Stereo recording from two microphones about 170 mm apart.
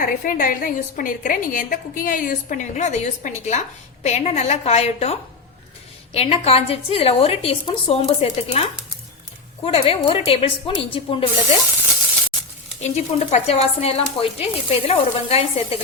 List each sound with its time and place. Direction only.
0.0 s a woman's voice: 50° left (ahead or behind)
6.1 s speech: 35° left (ahead or behind)
9.6 s speech: 35° left (ahead or behind)
12.8 s speech: 40° left (ahead or behind)